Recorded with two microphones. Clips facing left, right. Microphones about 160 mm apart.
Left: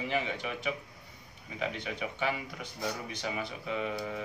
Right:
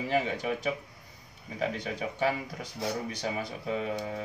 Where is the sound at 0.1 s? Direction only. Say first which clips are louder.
Right 7 dB; 40° right (ahead or behind).